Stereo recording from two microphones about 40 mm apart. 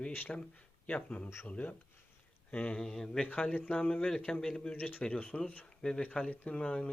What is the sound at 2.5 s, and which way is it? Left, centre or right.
Speech, left.